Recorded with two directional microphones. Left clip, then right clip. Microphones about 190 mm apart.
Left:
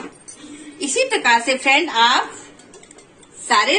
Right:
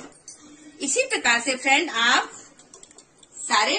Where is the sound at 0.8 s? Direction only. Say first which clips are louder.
Left 5 dB; 55° right (ahead or behind).